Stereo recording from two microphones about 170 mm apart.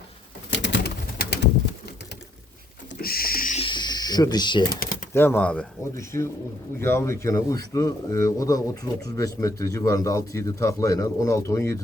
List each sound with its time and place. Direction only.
0.5 s pigeon: 90° left
3.0 s rodents: 60° left (ahead or behind)
3.5 s a sound: 30° left (ahead or behind)
5.1 s a man's voice: 10° left (ahead or behind)